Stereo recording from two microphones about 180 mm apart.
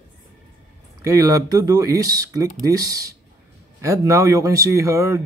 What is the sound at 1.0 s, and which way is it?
Speech, 20° right (ahead or behind).